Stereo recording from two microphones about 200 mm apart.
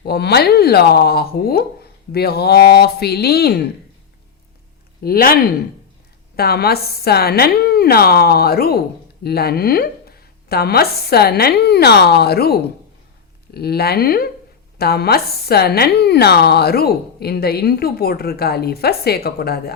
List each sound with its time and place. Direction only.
0.0 s speech: 55° left (ahead or behind)
5.0 s speech: 50° left (ahead or behind)